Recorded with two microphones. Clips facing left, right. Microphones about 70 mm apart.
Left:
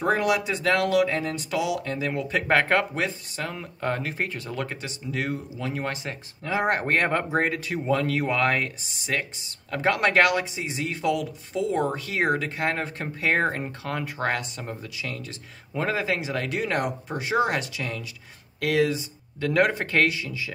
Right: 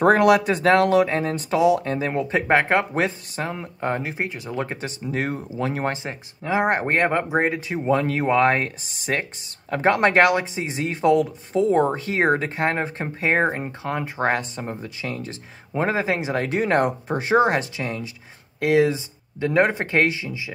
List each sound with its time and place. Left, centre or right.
0.0 s speech: right
2.4 s speech: centre
2.9 s speech: right
3.4 s speech: right
4.8 s speech: right
5.9 s speech: right